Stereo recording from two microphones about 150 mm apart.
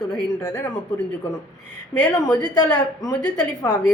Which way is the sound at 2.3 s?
10° left (ahead or behind).